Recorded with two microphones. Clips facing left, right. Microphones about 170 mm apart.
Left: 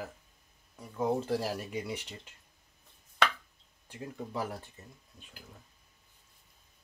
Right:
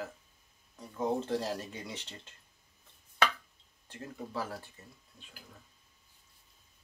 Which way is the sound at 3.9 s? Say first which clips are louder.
Left 2 dB; 20° left (ahead or behind).